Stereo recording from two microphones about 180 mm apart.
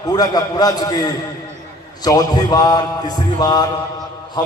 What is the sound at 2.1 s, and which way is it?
A man's voice, 20° left (ahead or behind).